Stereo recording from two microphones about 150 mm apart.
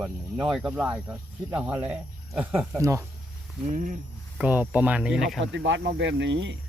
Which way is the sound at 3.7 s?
55° right (ahead or behind).